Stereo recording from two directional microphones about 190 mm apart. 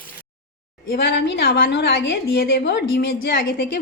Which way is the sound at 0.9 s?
60° left (ahead or behind).